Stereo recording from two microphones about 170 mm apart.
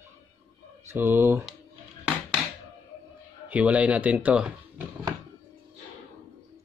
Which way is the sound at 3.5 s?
10° right (ahead or behind).